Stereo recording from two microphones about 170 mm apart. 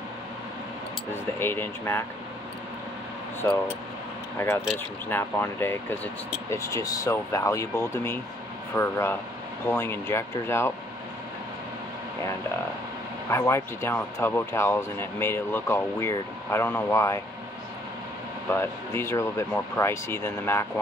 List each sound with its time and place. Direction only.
1.1 s speech: 15° left (ahead or behind)
3.4 s speech: 15° left (ahead or behind)
13.3 s speech: 15° left (ahead or behind)
18.5 s speech: 15° left (ahead or behind)